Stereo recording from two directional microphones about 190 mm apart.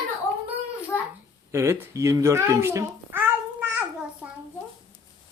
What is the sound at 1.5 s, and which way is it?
A child's voice, 15° right (ahead or behind).